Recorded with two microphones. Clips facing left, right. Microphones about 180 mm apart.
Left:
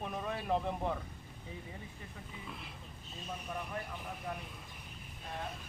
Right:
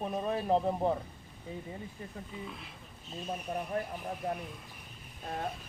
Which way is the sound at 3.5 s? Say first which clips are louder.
Right 7 dB; 40° right (ahead or behind).